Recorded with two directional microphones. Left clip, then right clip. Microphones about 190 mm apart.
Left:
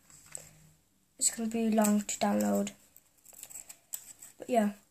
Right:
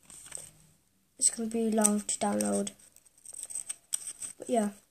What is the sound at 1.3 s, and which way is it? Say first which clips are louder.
Speech: left 1 dB; 25° right (ahead or behind).